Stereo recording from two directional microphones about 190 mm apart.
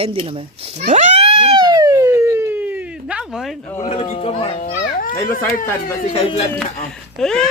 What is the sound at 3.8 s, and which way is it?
Speech, 35° left (ahead or behind).